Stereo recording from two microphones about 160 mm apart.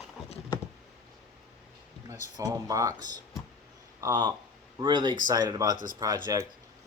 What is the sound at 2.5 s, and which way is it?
Speech, 20° right (ahead or behind).